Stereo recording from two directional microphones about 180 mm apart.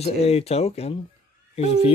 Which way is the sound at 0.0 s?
35° left (ahead or behind).